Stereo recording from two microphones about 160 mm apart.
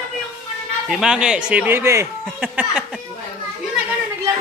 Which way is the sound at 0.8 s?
5° right (ahead or behind).